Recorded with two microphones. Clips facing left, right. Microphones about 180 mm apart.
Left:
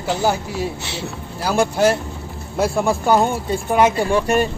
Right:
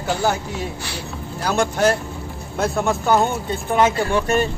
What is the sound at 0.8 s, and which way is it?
Speech, 25° left (ahead or behind).